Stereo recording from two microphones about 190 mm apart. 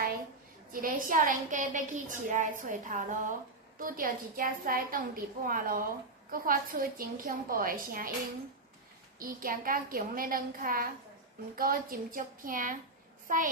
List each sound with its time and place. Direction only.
0.7 s a woman's voice: 45° right (ahead or behind)
9.1 s a woman's voice: 50° right (ahead or behind)